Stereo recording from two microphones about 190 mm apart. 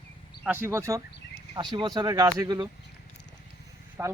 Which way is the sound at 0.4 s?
10° right (ahead or behind).